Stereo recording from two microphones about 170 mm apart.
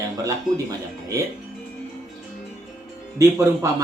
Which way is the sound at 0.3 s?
20° right (ahead or behind).